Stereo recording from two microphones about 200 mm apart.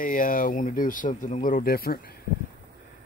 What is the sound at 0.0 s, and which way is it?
Speech, 45° left (ahead or behind).